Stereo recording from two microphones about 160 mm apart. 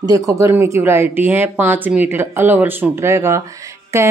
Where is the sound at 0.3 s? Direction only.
20° right (ahead or behind).